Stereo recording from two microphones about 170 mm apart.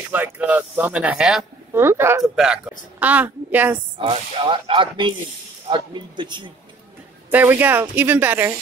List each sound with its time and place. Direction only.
0.1 s speech: 10° right (ahead or behind)
2.3 s a woman's voice: 5° right (ahead or behind)
4.0 s speech: 30° right (ahead or behind)
7.2 s speech: 10° right (ahead or behind)